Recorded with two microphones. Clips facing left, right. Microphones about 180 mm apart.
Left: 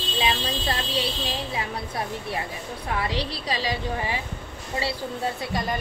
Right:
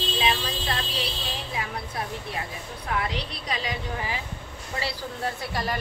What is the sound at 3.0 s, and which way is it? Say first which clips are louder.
A woman's voice: left 3 dB; 30° left (ahead or behind).